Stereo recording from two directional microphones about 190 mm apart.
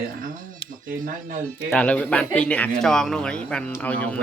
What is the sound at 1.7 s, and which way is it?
Speech, 5° left (ahead or behind).